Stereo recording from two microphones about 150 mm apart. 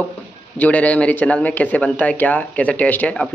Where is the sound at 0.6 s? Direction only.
10° left (ahead or behind).